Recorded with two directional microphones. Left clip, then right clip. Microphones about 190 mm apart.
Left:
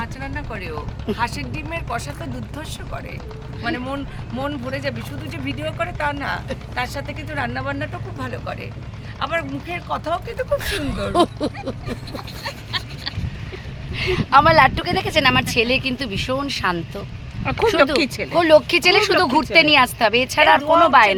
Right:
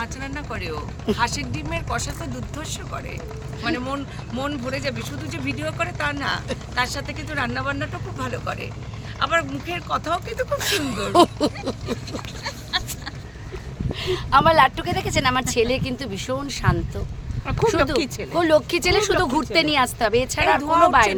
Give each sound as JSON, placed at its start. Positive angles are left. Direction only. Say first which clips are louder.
{"t": 0.0, "sound": "speech", "louder": "left 1 dB", "side_deg": 15}
{"t": 3.6, "sound": "speech", "louder": "even", "side_deg": 20}
{"t": 10.6, "sound": "speech", "louder": "right 1 dB", "side_deg": -25}
{"t": 12.7, "sound": "a sound", "louder": "right 2 dB", "side_deg": 5}
{"t": 13.9, "sound": "a woman's voice", "louder": "left 4 dB", "side_deg": 20}
{"t": 17.5, "sound": "speech", "louder": "left 4 dB", "side_deg": 45}
{"t": 18.3, "sound": "a woman's voice", "louder": "left 5 dB", "side_deg": 10}